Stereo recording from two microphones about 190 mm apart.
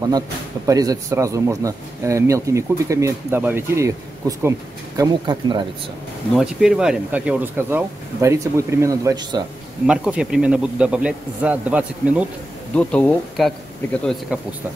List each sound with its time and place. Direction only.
0.7 s speech: 15° right (ahead or behind)
6.3 s speech: 5° right (ahead or behind); by 9.4 s 20° right (ahead or behind)
9.8 s speech: 5° right (ahead or behind)
12.7 s speech: 5° left (ahead or behind)
14.3 s speech: 5° right (ahead or behind)